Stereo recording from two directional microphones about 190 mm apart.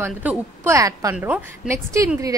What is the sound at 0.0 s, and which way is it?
A woman's voice, 10° right (ahead or behind).